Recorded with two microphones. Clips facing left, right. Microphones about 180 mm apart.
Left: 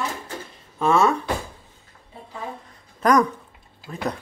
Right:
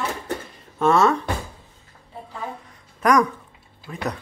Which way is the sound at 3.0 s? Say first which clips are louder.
Even; 30° left (ahead or behind).